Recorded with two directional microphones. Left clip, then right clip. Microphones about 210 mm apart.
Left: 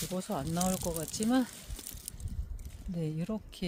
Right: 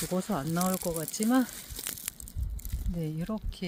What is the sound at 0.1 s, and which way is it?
Speech, 15° right (ahead or behind).